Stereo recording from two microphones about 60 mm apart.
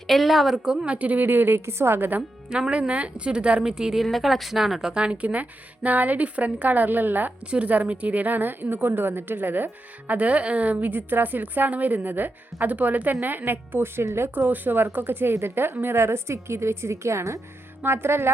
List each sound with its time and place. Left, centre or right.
0.1 s a woman's voice: centre
0.9 s speech: right
2.5 s a woman's voice: centre; by 14.3 s right
14.3 s a woman's voice: right
17.8 s a woman's voice: right